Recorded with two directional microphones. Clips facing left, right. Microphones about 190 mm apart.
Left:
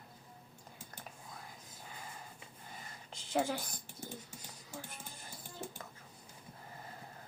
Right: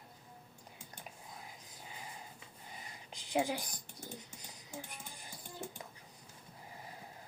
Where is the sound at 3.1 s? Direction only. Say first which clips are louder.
Even; 15° right (ahead or behind).